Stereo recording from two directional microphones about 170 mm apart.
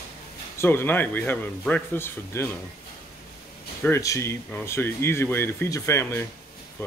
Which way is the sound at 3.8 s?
15° left (ahead or behind).